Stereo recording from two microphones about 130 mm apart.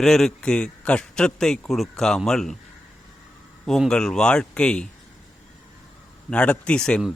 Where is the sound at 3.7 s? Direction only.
5° left (ahead or behind).